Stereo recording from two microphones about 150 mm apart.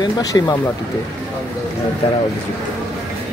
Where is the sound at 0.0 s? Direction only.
25° left (ahead or behind).